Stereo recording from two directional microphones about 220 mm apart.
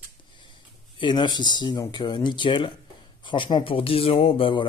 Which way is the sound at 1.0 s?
20° left (ahead or behind).